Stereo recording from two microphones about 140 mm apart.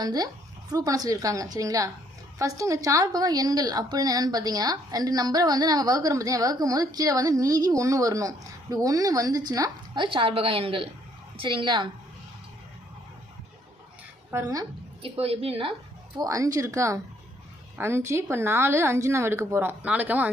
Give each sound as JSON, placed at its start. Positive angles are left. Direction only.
{"t": 0.0, "sound": "a woman's voice", "side_deg": -30}
{"t": 14.3, "sound": "speech", "side_deg": -20}
{"t": 15.0, "sound": "a woman's voice", "side_deg": -45}
{"t": 16.1, "sound": "a woman's voice", "side_deg": -25}